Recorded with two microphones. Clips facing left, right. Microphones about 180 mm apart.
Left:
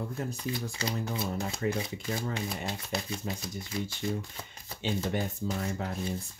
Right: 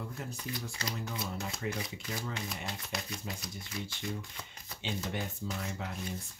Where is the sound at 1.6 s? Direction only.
50° left (ahead or behind).